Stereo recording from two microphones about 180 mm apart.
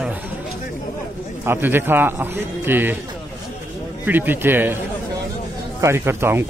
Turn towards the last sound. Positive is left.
turn(degrees=-15)  # may be behind; listen again after turning